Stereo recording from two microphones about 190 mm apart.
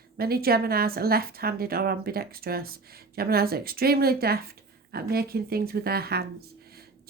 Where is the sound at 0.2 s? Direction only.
55° right (ahead or behind).